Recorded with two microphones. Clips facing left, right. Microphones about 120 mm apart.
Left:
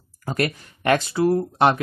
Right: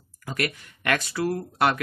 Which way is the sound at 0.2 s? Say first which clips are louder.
Left 5 dB; 40° left (ahead or behind).